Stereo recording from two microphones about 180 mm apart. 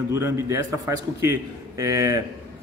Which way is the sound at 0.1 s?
15° right (ahead or behind).